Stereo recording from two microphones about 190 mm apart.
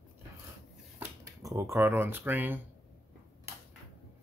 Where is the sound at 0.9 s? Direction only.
15° right (ahead or behind).